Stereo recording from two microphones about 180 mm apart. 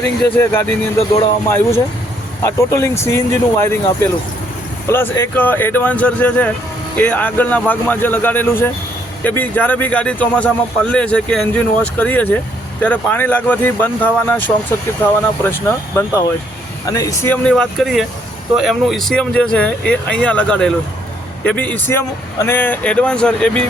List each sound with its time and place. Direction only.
0.3 s speech: 10° left (ahead or behind)
4.9 s speech: 15° left (ahead or behind)
17.4 s speech: 5° left (ahead or behind)